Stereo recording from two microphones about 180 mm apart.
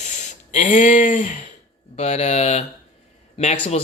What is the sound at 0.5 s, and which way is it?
Speech, 45° left (ahead or behind).